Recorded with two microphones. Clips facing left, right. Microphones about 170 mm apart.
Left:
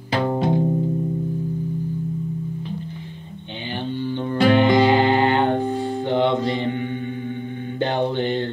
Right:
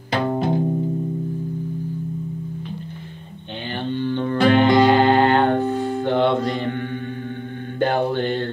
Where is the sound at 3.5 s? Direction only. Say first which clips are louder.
Right 2 dB; 15° left (ahead or behind).